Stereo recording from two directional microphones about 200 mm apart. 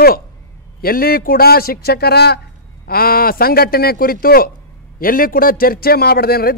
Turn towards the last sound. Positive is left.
turn(degrees=50)  # may be behind; listen again after turning